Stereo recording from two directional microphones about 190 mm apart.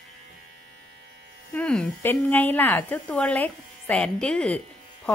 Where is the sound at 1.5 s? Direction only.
5° left (ahead or behind).